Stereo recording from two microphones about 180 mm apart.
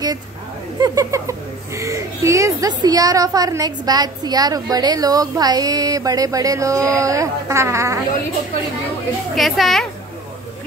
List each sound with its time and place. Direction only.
0.7 s a woman's voice: 20° right (ahead or behind)
9.3 s a child's voice: centre (ahead or behind)